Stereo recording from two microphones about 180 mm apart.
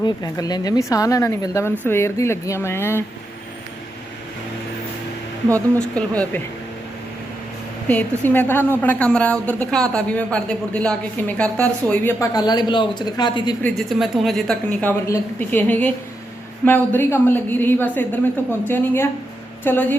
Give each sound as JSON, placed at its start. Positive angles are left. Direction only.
{"t": 0.0, "sound": "a woman's voice", "side_deg": 20}
{"t": 5.9, "sound": "a woman's voice", "side_deg": 5}
{"t": 7.9, "sound": "a woman's voice", "side_deg": 10}
{"t": 13.6, "sound": "a woman's voice", "side_deg": 5}